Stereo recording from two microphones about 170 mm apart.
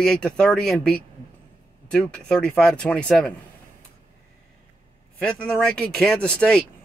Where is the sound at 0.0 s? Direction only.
5° left (ahead or behind).